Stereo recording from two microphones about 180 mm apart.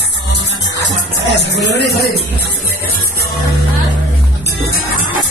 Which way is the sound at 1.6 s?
65° left (ahead or behind).